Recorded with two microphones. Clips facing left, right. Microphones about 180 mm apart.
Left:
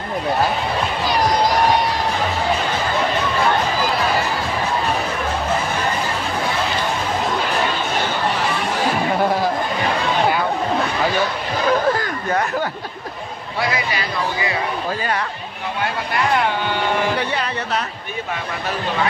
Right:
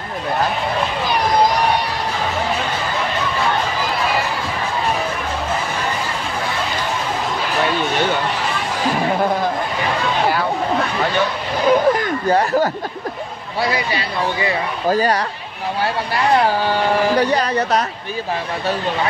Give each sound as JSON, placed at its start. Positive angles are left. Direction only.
{"t": 11.6, "sound": "speech", "side_deg": -20}
{"t": 12.3, "sound": "a man's voice", "side_deg": -30}
{"t": 16.3, "sound": "a man's voice", "side_deg": -35}